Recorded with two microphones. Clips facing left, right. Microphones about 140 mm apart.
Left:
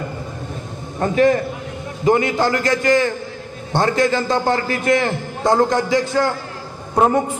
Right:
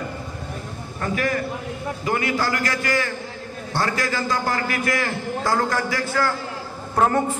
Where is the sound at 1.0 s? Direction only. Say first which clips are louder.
Left 9 dB; 25° left (ahead or behind).